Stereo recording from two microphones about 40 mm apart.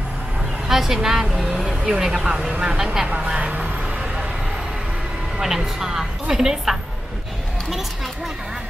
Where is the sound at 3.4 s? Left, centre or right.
Right.